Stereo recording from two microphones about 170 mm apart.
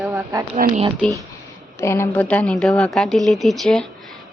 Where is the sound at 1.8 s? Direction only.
15° left (ahead or behind).